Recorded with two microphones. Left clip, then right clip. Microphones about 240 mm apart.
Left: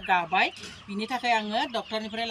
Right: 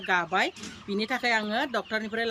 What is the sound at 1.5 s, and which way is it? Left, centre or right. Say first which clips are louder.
Speech: even; centre.